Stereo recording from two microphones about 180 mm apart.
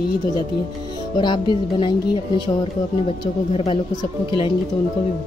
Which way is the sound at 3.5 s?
30° left (ahead or behind).